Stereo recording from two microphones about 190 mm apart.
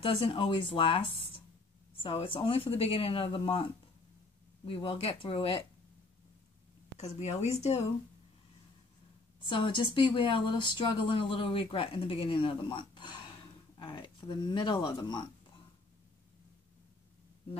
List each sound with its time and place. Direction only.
0.0 s speech: 25° left (ahead or behind)
4.6 s speech: 30° left (ahead or behind)
7.0 s speech: 35° left (ahead or behind)
9.4 s speech: 25° left (ahead or behind)